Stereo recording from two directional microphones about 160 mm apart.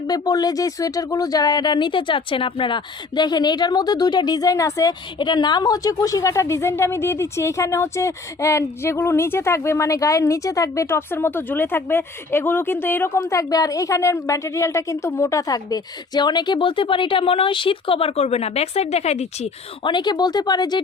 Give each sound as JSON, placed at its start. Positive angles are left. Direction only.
{"t": 0.1, "sound": "speech", "side_deg": 25}
{"t": 19.9, "sound": "speech", "side_deg": 25}